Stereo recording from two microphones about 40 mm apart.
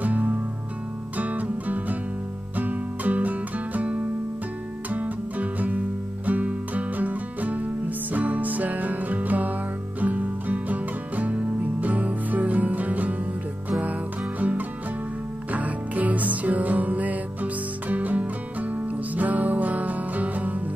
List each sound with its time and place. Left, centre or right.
0.0 s music: right
15.5 s music: right